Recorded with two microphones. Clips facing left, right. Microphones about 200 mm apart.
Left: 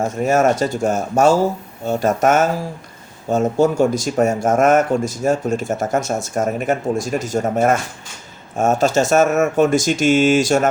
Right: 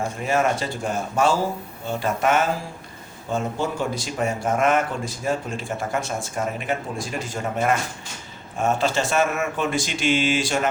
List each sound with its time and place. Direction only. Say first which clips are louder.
0.2 s speech: left 7 dB; 45° left (ahead or behind)